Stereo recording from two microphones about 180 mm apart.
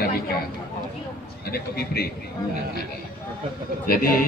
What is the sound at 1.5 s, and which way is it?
Speech, 60° left (ahead or behind).